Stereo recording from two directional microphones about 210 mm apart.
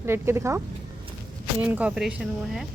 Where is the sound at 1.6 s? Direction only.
5° right (ahead or behind).